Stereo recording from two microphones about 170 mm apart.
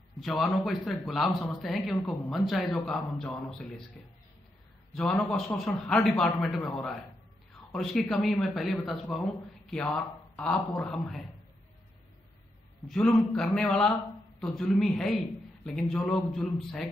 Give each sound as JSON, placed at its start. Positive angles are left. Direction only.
{"t": 0.2, "sound": "a man's voice", "side_deg": 5}
{"t": 12.8, "sound": "a man's voice", "side_deg": 5}